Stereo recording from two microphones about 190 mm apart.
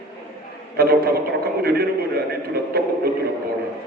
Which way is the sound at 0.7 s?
55° right (ahead or behind).